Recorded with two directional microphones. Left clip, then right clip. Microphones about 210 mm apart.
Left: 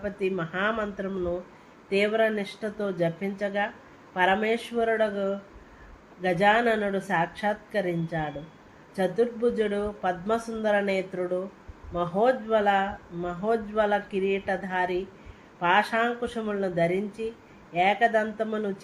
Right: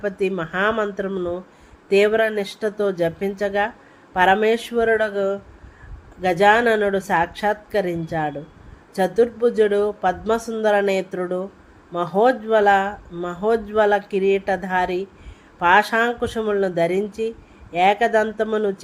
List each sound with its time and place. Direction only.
0.0 s speech: 55° right (ahead or behind)